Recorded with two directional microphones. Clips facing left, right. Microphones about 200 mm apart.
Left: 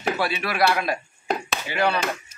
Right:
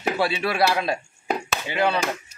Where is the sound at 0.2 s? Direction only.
25° right (ahead or behind).